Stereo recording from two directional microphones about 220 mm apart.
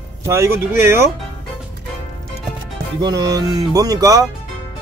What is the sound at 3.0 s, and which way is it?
Speech, 15° right (ahead or behind).